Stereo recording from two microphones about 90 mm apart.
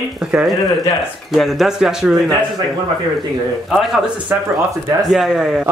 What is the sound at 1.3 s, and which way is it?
Speech, centre (ahead or behind).